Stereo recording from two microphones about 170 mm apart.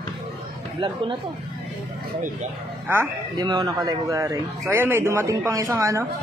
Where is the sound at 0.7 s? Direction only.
30° right (ahead or behind).